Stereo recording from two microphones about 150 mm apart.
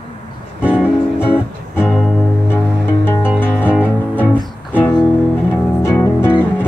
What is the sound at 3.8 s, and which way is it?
Music, 10° left (ahead or behind).